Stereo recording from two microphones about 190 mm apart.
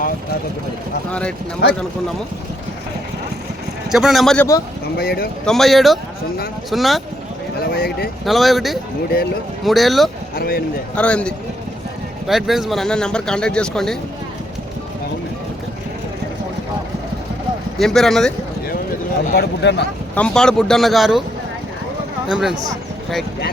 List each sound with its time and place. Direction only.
3.9 s speech: centre (ahead or behind)
4.9 s speech: 55° left (ahead or behind)
5.5 s speech: centre (ahead or behind)
7.7 s speech: 55° left (ahead or behind)
8.2 s speech: centre (ahead or behind)
10.3 s speech: 50° left (ahead or behind)
10.9 s speech: 5° left (ahead or behind)
17.7 s speech: centre (ahead or behind)
19.3 s speech: 60° left (ahead or behind)
20.1 s speech: 5° left (ahead or behind)
22.3 s speech: 5° right (ahead or behind)